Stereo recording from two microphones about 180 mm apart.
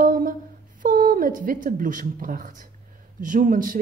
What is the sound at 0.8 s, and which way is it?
A woman's voice, 50° right (ahead or behind).